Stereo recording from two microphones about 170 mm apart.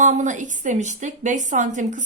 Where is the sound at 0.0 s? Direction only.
45° right (ahead or behind).